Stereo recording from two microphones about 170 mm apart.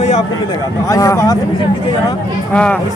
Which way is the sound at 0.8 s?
20° left (ahead or behind).